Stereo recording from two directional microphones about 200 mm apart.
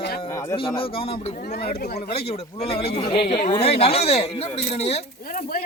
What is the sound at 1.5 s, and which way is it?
Speech, 50° left (ahead or behind).